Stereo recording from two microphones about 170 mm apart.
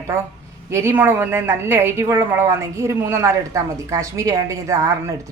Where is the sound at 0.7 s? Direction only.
15° right (ahead or behind).